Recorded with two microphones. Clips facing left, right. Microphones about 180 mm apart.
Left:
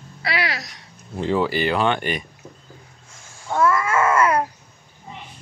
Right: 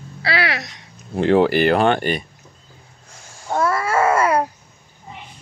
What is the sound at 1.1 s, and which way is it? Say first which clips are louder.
Speech: right 6 dB; 65° right (ahead or behind).